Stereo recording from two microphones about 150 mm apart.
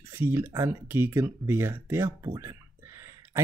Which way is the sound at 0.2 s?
15° right (ahead or behind).